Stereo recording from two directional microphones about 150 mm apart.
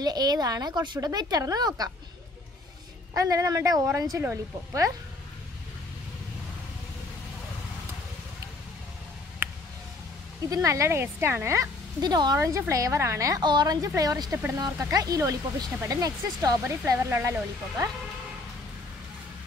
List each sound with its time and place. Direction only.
0.0 s speech: 25° right (ahead or behind)
3.2 s speech: 20° right (ahead or behind)
10.4 s speech: 20° right (ahead or behind)